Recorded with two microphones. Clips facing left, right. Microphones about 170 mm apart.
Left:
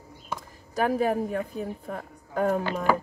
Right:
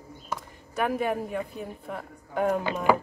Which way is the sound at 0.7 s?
35° left (ahead or behind).